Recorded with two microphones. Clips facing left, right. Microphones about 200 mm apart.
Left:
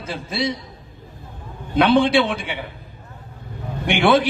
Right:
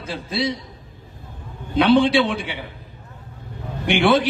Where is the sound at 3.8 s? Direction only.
50° left (ahead or behind).